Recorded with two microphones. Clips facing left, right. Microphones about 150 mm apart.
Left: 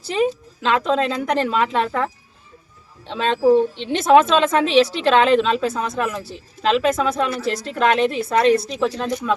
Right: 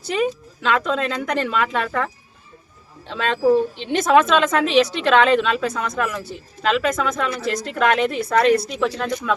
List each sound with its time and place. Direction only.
0.1 s a woman's voice: 30° left (ahead or behind)
3.1 s a woman's voice: 30° left (ahead or behind)